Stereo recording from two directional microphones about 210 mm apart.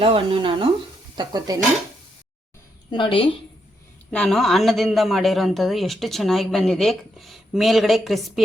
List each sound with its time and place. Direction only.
0.0 s speech: 25° right (ahead or behind)
1.1 s stir: 20° right (ahead or behind)
2.9 s a woman's voice: 25° left (ahead or behind)
4.1 s a man's voice: 5° left (ahead or behind)